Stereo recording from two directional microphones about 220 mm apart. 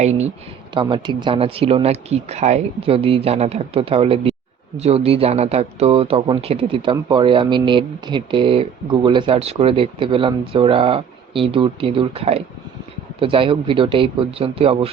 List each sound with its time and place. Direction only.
0.0 s speech: 30° right (ahead or behind)